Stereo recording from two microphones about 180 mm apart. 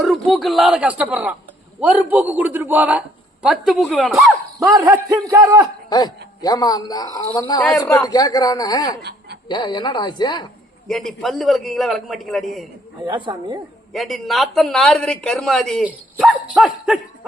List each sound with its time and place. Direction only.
0.0 s a man's voice: centre (ahead or behind)
4.6 s a man's voice: 20° right (ahead or behind)
5.9 s a man's voice: 20° left (ahead or behind)
9.0 s chuckle: 65° right (ahead or behind)
9.5 s a man's voice: 25° left (ahead or behind)
10.8 s speech: centre (ahead or behind)
13.3 s a man's voice: 20° right (ahead or behind)
13.9 s speech: centre (ahead or behind)